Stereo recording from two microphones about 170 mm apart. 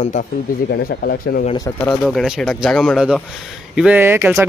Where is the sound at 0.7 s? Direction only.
70° left (ahead or behind).